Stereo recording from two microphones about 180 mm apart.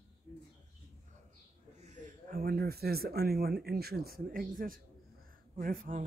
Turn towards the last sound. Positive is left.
turn(degrees=-50)  # may be behind; listen again after turning